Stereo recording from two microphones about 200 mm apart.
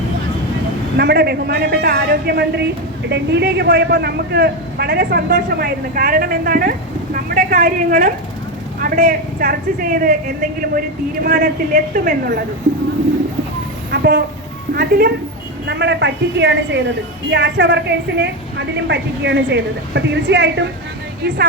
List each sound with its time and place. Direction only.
0.9 s a man's voice: 55° right (ahead or behind)
13.9 s a woman's voice: 55° right (ahead or behind)